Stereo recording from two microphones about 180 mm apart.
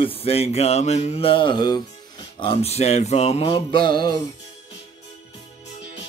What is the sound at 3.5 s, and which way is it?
Music, 25° left (ahead or behind).